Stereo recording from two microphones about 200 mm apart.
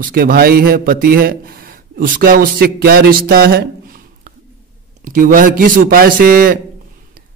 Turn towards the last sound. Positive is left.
turn(degrees=-45)  # may be behind; listen again after turning